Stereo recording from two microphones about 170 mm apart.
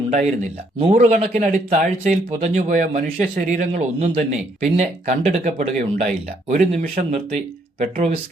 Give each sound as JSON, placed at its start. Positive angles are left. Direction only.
{"t": 0.1, "sound": "speech", "side_deg": -45}